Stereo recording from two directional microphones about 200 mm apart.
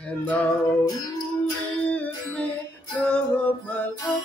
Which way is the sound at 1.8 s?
5° left (ahead or behind).